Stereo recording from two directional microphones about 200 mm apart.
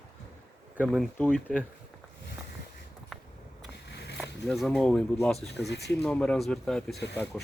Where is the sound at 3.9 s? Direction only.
55° left (ahead or behind).